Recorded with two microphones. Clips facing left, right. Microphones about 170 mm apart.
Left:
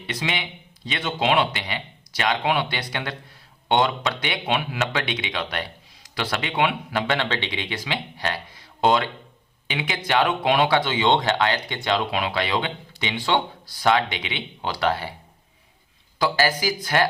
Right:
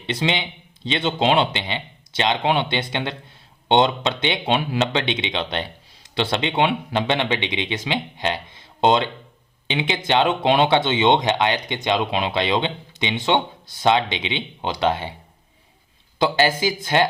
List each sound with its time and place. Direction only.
0.0 s speech: 25° right (ahead or behind)
16.1 s speech: 20° right (ahead or behind)